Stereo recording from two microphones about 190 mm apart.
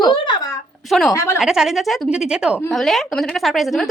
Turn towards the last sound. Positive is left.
turn(degrees=0)  # may be behind; listen again after turning